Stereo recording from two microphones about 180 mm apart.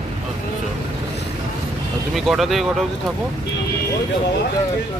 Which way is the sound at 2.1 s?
Centre (ahead or behind).